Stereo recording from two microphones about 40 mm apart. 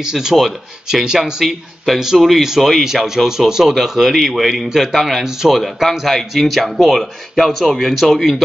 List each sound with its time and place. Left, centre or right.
0.0 s speech: centre
1.4 s speech: centre
5.6 s speech: centre